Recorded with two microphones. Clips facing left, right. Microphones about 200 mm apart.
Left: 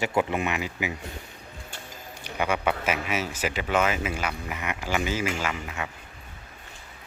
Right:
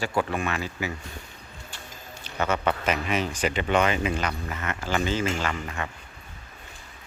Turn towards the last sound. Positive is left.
turn(degrees=10)  # may be behind; listen again after turning